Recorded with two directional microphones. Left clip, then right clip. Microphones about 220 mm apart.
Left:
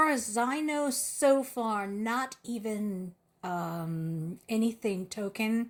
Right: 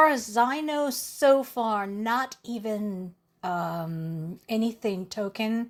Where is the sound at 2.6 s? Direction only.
15° right (ahead or behind).